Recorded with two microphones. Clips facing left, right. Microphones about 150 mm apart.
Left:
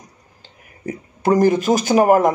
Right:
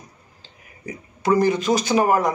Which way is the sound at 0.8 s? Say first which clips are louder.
Left 6 dB; 50° left (ahead or behind).